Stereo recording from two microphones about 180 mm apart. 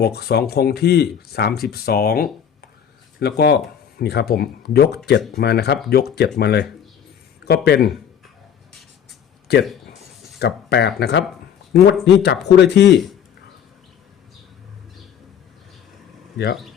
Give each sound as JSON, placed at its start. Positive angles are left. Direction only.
{"t": 0.0, "sound": "speech", "side_deg": 65}
{"t": 9.5, "sound": "speech", "side_deg": 65}